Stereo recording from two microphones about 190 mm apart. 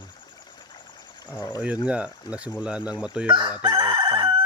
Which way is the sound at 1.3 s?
20° left (ahead or behind).